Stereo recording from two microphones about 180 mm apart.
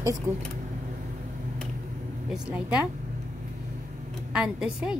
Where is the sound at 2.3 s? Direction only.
5° right (ahead or behind).